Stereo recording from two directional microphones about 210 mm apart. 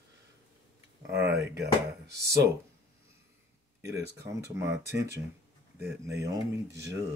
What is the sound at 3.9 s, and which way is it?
Speech, 55° right (ahead or behind).